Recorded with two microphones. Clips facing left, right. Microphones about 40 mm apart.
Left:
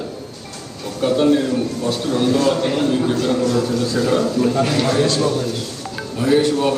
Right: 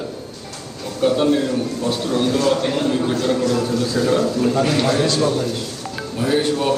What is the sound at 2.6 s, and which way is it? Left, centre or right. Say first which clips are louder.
A man's voice: left 1 dB; centre.